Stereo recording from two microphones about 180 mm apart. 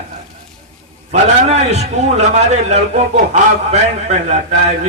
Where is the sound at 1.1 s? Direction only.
35° right (ahead or behind).